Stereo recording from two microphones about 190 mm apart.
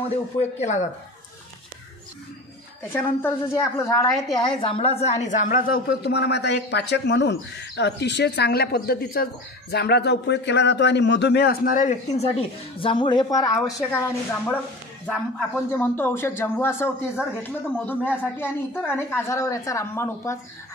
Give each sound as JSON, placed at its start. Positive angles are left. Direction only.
{"t": 0.1, "sound": "speech", "side_deg": 35}
{"t": 2.9, "sound": "a woman's voice", "side_deg": 10}
{"t": 15.7, "sound": "speech", "side_deg": 10}